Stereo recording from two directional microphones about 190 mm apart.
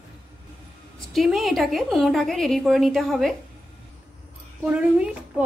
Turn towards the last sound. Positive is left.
turn(degrees=-5)  # may be behind; listen again after turning